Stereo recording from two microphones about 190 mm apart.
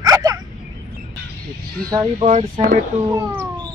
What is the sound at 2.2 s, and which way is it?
Speech, 30° right (ahead or behind).